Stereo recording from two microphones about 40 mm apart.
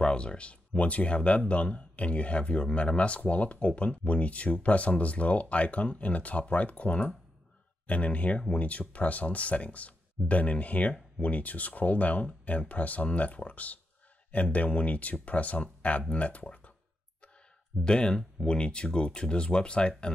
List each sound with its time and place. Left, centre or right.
0.0 s speech: left
16.4 s a sound: left
17.8 s speech: left